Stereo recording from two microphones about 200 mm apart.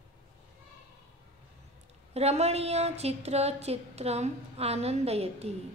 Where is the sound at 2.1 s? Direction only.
30° right (ahead or behind).